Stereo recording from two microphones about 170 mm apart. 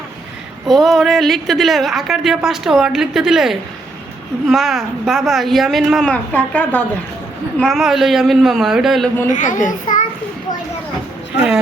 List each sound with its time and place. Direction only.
0.7 s a woman's voice: centre (ahead or behind)
9.3 s a child's voice: 50° left (ahead or behind)
11.3 s a woman's voice: 5° right (ahead or behind)